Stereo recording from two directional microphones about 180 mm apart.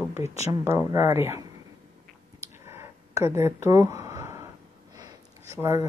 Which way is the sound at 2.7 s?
15° right (ahead or behind).